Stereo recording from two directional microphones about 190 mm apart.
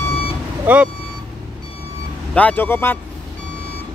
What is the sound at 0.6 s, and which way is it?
Speech, 5° right (ahead or behind).